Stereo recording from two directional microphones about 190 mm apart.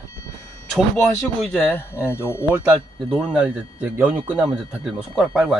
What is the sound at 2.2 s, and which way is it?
A man's voice, 10° right (ahead or behind).